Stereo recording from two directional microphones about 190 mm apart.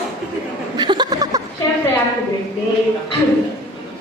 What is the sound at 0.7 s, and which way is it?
Chuckle, 25° right (ahead or behind).